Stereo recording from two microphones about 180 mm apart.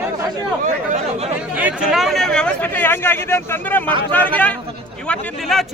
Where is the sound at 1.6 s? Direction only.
5° right (ahead or behind); by 3.8 s 10° left (ahead or behind).